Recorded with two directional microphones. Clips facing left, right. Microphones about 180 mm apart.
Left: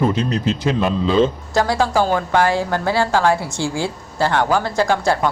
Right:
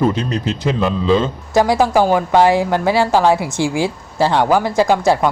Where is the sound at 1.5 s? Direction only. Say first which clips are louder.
Right 4 dB; 20° right (ahead or behind).